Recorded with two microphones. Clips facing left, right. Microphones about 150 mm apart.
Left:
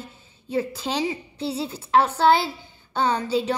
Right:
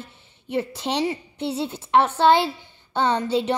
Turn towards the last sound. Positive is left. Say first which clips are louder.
# right 1 dB
turn(degrees=-25)  # may be behind; listen again after turning